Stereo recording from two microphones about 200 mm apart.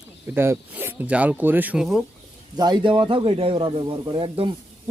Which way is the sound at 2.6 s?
20° right (ahead or behind).